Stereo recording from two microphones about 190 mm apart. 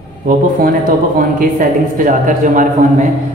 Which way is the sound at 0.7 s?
45° right (ahead or behind).